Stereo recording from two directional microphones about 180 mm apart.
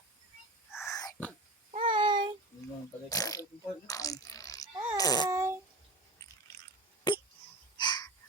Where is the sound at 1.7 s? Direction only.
30° right (ahead or behind).